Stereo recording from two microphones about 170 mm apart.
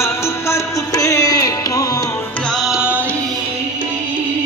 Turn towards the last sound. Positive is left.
turn(degrees=-10)  # may be behind; listen again after turning